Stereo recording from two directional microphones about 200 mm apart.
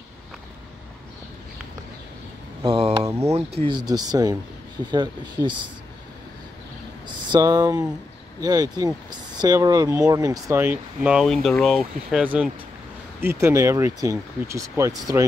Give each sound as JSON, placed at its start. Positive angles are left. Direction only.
{"t": 2.6, "sound": "a sound", "side_deg": -25}
{"t": 3.1, "sound": "speech", "side_deg": -15}
{"t": 3.3, "sound": "speech", "side_deg": -25}
{"t": 7.2, "sound": "speech", "side_deg": -20}